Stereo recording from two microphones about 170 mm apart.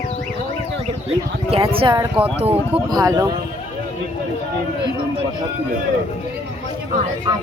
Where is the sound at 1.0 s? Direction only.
35° right (ahead or behind).